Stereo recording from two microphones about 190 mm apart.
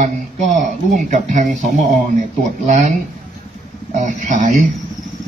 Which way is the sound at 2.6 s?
40° right (ahead or behind).